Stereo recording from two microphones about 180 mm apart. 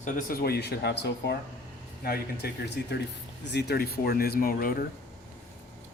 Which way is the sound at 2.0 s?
55° left (ahead or behind).